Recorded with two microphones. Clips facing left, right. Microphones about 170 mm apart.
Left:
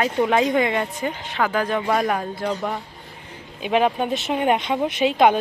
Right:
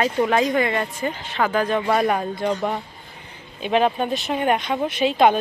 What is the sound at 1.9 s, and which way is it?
Speech, 5° right (ahead or behind).